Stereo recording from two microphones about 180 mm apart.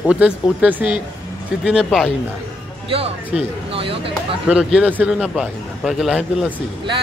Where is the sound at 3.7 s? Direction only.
30° right (ahead or behind).